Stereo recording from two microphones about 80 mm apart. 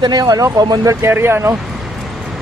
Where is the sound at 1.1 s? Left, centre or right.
Right.